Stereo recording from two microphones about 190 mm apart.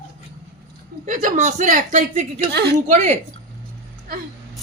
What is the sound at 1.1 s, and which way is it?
Speech, 40° right (ahead or behind).